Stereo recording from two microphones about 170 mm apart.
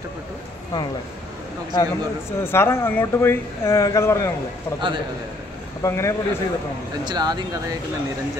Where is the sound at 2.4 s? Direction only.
15° left (ahead or behind).